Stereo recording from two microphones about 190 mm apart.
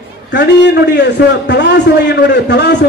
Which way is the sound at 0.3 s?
65° left (ahead or behind).